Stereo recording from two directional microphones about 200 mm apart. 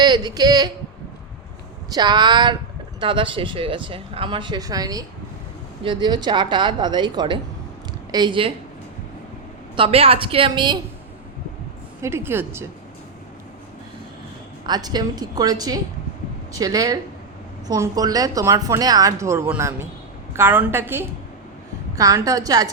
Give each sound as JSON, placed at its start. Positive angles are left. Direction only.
{"t": 0.0, "sound": "a man's voice", "side_deg": -20}
{"t": 1.9, "sound": "speech", "side_deg": -20}
{"t": 9.7, "sound": "speech", "side_deg": -30}
{"t": 12.0, "sound": "speech", "side_deg": -10}
{"t": 14.7, "sound": "speech", "side_deg": -20}